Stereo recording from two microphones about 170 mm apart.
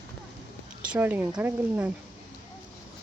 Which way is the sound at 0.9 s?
10° right (ahead or behind).